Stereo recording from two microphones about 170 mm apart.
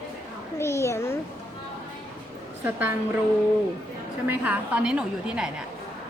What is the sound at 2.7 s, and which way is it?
Speech, 10° right (ahead or behind).